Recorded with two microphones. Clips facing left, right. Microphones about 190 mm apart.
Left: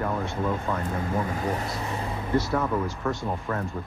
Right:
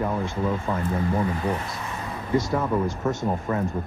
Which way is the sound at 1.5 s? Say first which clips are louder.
Left 1 dB; 30° left (ahead or behind).